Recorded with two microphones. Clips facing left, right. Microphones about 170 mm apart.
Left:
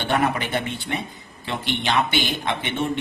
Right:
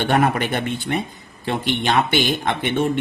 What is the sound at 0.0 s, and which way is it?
Speech, 55° right (ahead or behind).